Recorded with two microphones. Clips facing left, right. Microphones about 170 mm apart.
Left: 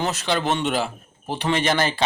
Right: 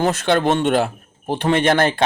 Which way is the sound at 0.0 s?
55° right (ahead or behind).